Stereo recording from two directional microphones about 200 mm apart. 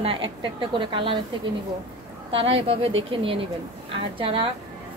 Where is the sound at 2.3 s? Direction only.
30° right (ahead or behind).